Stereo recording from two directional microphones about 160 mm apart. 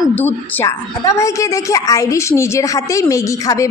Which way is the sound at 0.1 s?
10° left (ahead or behind).